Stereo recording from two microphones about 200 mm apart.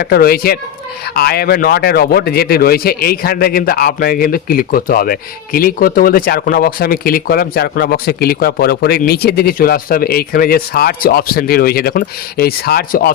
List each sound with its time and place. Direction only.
0.0 s speech: 50° left (ahead or behind)